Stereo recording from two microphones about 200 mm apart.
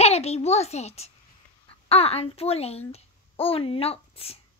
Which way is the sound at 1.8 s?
30° left (ahead or behind).